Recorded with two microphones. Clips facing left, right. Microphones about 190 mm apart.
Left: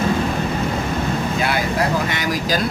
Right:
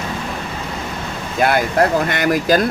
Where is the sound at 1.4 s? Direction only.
50° right (ahead or behind).